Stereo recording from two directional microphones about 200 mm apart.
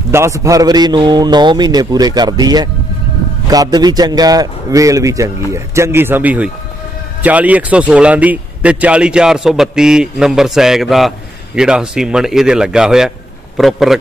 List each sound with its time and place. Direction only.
0.1 s a man's voice: 15° right (ahead or behind)